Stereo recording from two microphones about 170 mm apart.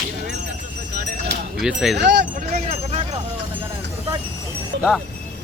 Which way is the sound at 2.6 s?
35° right (ahead or behind).